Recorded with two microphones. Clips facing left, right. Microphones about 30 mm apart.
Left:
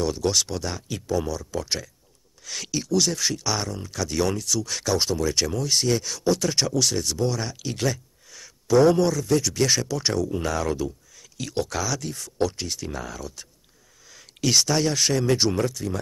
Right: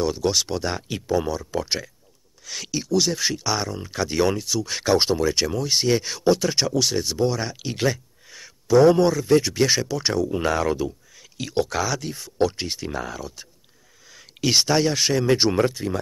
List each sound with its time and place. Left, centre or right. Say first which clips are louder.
0.0 s speech: right 1 dB; centre
2.4 s speech: even; centre; by 5.2 s right
5.2 s speech: right 2 dB; centre
8.6 s speech: right 2 dB; centre; by 9.6 s right
9.6 s speech: right 2 dB; centre